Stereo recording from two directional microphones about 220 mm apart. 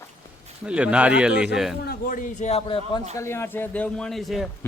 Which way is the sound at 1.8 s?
40° left (ahead or behind).